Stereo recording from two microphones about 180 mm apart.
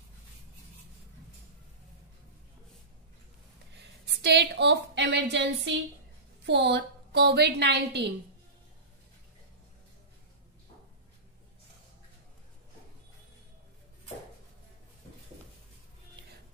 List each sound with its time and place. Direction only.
3.7 s a woman's voice: 70° right (ahead or behind)